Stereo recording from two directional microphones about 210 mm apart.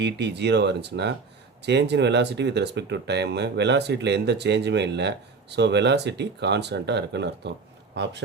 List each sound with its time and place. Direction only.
0.0 s speech: 55° right (ahead or behind)